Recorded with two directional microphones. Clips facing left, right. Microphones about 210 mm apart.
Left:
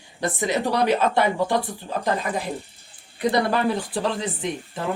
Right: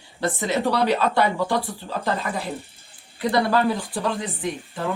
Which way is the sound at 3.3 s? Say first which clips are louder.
Right 2 dB; 20° left (ahead or behind).